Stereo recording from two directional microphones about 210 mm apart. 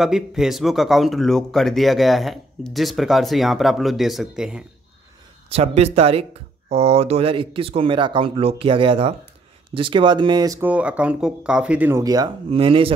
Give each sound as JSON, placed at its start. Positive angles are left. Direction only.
{"t": 0.0, "sound": "speech", "side_deg": 0}
{"t": 5.5, "sound": "speech", "side_deg": -30}